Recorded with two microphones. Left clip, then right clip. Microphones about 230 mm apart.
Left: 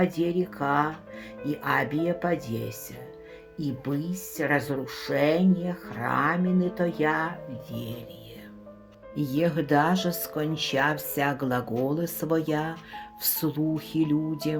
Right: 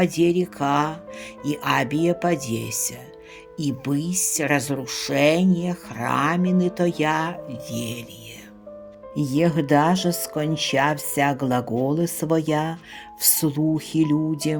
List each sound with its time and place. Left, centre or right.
0.0 s speech: right
9.1 s speech: right